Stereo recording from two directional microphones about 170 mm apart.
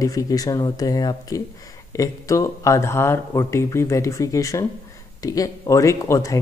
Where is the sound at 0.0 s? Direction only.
20° left (ahead or behind).